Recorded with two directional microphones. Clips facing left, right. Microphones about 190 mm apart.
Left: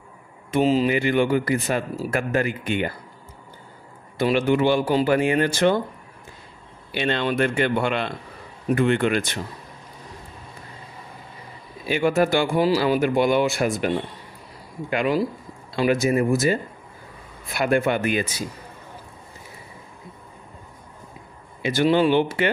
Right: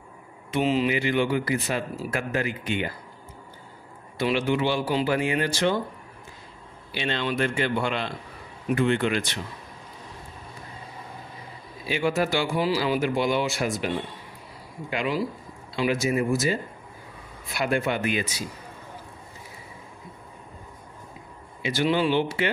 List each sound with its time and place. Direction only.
0.5 s a man's voice: 40° left (ahead or behind)
4.2 s a man's voice: 50° left (ahead or behind)
6.9 s a man's voice: 55° left (ahead or behind)
11.8 s a man's voice: 50° left (ahead or behind)
21.6 s a man's voice: 50° left (ahead or behind)